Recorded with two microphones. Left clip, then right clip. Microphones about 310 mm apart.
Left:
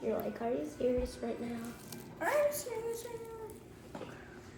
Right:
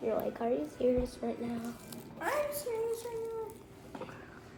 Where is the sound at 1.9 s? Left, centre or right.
Centre.